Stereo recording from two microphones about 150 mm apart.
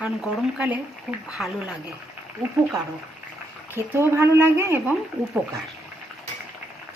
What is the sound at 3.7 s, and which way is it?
Speech, 15° right (ahead or behind).